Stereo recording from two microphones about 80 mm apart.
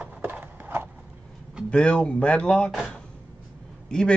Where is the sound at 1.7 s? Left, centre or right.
Centre.